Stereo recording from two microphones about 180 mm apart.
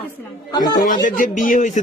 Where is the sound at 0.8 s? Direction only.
45° left (ahead or behind).